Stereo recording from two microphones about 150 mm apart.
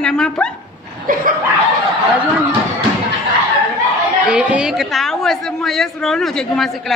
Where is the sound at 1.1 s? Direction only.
65° right (ahead or behind).